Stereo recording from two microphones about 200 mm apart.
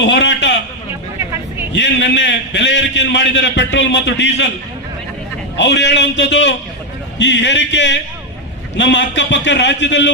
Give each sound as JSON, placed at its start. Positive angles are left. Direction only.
{"t": 0.0, "sound": "a sound", "side_deg": 65}
{"t": 1.7, "sound": "a man's voice", "side_deg": 65}
{"t": 5.5, "sound": "a man's voice", "side_deg": 65}